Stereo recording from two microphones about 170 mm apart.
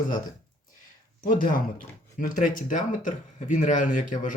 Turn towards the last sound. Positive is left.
turn(degrees=50)  # may be behind; listen again after turning